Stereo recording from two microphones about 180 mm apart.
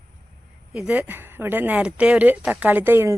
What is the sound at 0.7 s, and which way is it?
Speech, 5° right (ahead or behind).